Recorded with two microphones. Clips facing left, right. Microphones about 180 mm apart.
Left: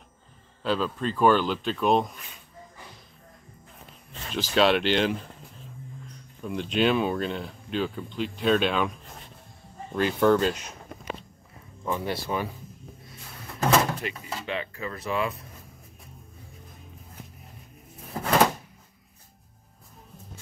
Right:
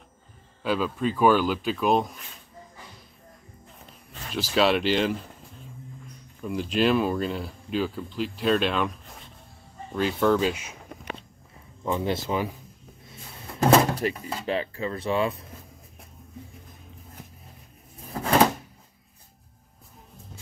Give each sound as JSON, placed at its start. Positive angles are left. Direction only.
{"t": 0.6, "sound": "speech", "side_deg": -10}
{"t": 4.3, "sound": "speech", "side_deg": 0}
{"t": 6.4, "sound": "speech", "side_deg": 0}
{"t": 9.9, "sound": "speech", "side_deg": 0}
{"t": 11.8, "sound": "speech", "side_deg": -20}
{"t": 13.6, "sound": "speech", "side_deg": -35}